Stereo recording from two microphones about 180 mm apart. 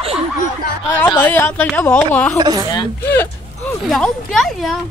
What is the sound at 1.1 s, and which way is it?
Speech, 10° left (ahead or behind).